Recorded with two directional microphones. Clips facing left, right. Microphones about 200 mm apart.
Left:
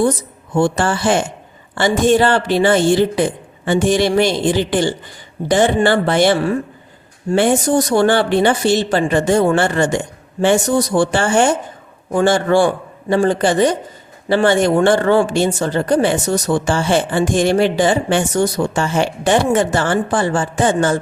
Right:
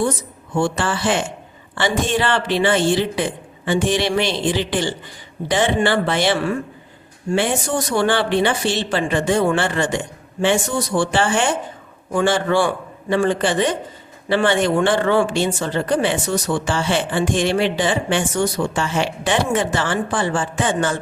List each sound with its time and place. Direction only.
0.5 s a man's voice: 45° left (ahead or behind)